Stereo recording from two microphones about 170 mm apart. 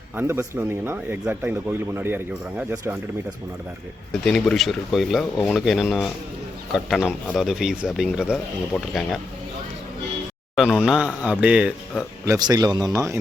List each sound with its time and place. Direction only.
0.2 s speech: 15° right (ahead or behind)
4.3 s speech: centre (ahead or behind)
10.5 s speech: centre (ahead or behind); by 13.1 s 20° right (ahead or behind)